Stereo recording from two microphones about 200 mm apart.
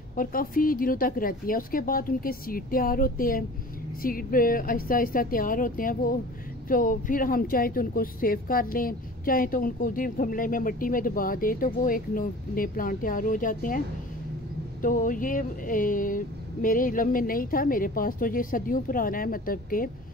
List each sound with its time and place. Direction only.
0.1 s speech: 45° left (ahead or behind)